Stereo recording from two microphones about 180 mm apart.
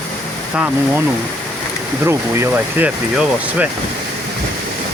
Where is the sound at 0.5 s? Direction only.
5° right (ahead or behind).